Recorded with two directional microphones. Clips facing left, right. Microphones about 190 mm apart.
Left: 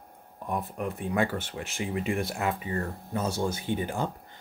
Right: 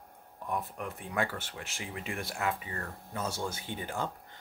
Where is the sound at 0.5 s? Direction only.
20° left (ahead or behind).